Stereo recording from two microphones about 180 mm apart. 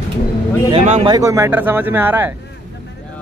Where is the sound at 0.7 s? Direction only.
40° right (ahead or behind).